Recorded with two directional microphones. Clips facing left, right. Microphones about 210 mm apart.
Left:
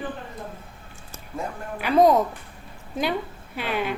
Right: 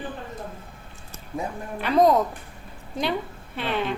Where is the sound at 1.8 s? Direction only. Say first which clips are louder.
Left 1 dB; 5° left (ahead or behind).